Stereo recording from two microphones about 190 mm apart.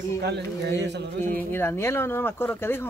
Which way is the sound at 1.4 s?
10° left (ahead or behind).